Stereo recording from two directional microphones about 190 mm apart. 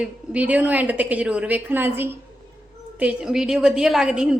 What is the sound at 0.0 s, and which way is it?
A woman's voice, 5° right (ahead or behind).